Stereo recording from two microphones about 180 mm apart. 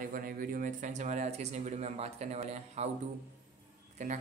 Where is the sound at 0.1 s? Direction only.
50° right (ahead or behind).